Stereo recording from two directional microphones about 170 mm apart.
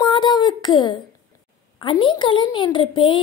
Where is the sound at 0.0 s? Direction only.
25° left (ahead or behind).